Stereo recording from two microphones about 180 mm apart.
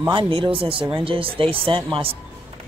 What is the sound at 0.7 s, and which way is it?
Speech, 10° right (ahead or behind).